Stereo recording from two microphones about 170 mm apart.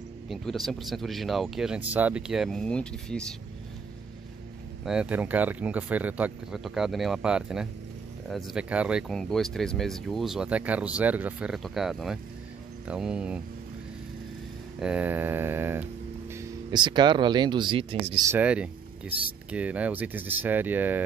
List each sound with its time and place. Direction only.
0.3 s speech: centre (ahead or behind)
4.8 s speech: 5° right (ahead or behind)
14.8 s speech: 5° right (ahead or behind)
16.3 s speech: 25° right (ahead or behind)
18.3 s speech: 10° right (ahead or behind)